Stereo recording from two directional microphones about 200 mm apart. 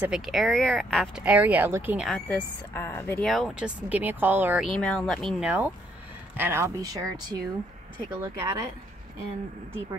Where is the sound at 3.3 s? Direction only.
Centre (ahead or behind).